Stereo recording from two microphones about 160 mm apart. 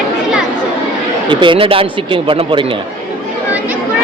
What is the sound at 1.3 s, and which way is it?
A man's voice, 30° right (ahead or behind).